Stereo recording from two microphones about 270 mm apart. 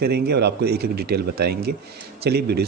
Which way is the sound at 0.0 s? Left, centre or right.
Right.